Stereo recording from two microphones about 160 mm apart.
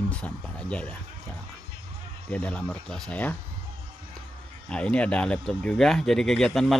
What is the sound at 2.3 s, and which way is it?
Speech, 10° left (ahead or behind).